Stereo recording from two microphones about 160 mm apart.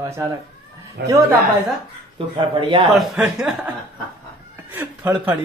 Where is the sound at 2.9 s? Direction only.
Centre (ahead or behind).